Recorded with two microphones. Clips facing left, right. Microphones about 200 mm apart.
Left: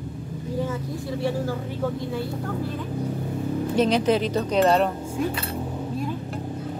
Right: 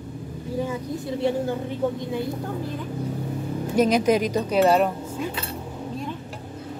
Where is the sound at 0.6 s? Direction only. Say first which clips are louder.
Right 2 dB; 20° right (ahead or behind).